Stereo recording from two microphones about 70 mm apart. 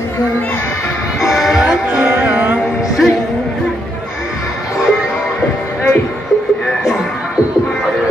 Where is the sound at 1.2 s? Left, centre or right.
Centre.